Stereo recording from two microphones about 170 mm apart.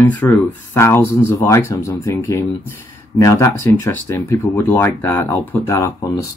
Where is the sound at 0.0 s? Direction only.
10° left (ahead or behind).